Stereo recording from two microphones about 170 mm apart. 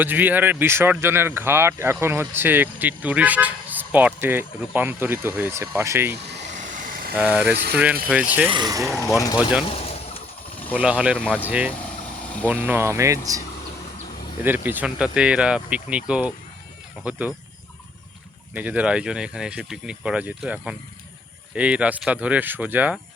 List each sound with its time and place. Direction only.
0.0 s speech: 10° right (ahead or behind)
6.6 s vehicle: 50° right (ahead or behind)
7.2 s speech: 5° right (ahead or behind)
7.5 s speech: 75° right (ahead or behind)
8.0 s speech: 10° right (ahead or behind)
8.4 s speech: 25° right (ahead or behind)
9.6 s vehicle: 35° left (ahead or behind)
10.8 s speech: 5° right (ahead or behind)
11.2 s speech: 5° left (ahead or behind)
11.4 s speech: 5° right (ahead or behind)
14.4 s speech: 10° right (ahead or behind)
18.5 s speech: 10° right (ahead or behind)